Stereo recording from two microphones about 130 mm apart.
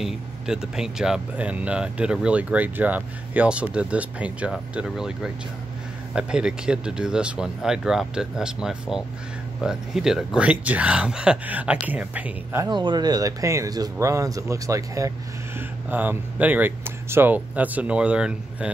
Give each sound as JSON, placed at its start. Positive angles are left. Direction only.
{"t": 0.0, "sound": "speech", "side_deg": -5}
{"t": 12.6, "sound": "speech", "side_deg": -35}
{"t": 15.9, "sound": "speech", "side_deg": -15}